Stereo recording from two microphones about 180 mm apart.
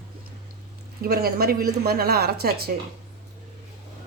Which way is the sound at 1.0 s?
55° right (ahead or behind).